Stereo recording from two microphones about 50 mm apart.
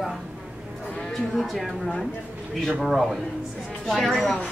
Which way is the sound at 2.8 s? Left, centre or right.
Centre.